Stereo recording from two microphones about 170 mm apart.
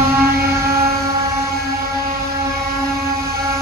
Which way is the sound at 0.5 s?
15° right (ahead or behind).